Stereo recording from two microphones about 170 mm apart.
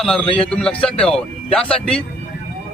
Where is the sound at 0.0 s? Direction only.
5° left (ahead or behind).